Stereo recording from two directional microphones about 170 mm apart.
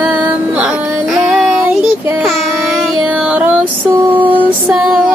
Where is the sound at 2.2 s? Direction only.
Centre (ahead or behind).